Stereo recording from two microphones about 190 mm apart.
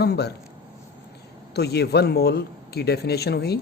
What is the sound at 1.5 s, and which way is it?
Speech, 60° left (ahead or behind).